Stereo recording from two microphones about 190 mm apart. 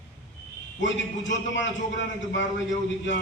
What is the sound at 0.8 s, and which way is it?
A man's voice, 75° left (ahead or behind).